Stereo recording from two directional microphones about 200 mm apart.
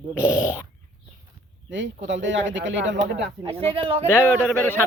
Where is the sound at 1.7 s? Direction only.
65° right (ahead or behind).